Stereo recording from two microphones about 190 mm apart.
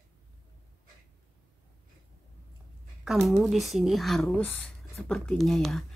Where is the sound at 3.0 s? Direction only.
Centre (ahead or behind).